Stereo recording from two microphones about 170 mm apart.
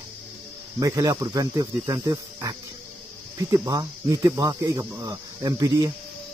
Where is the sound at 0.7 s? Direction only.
20° right (ahead or behind).